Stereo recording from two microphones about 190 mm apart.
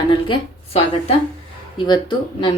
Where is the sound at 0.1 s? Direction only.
30° left (ahead or behind).